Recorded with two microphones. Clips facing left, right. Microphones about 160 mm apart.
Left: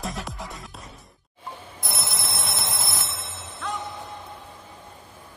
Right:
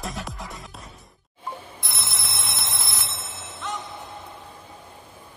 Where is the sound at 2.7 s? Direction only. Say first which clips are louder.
Left 3 dB; 50° left (ahead or behind).